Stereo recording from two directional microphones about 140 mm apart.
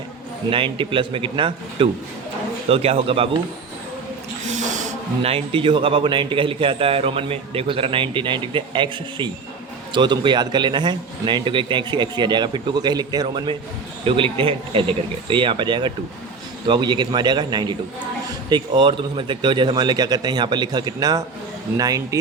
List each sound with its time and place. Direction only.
0.5 s a man's voice: 40° right (ahead or behind)
4.4 s speech: 60° right (ahead or behind); by 22.2 s 25° right (ahead or behind)